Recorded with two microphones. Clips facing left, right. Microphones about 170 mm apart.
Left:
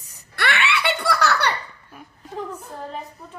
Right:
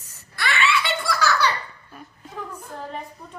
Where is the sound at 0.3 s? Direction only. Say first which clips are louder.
Even; 65° left (ahead or behind).